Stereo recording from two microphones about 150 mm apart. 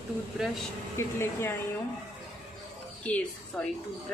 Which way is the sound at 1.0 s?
15° left (ahead or behind).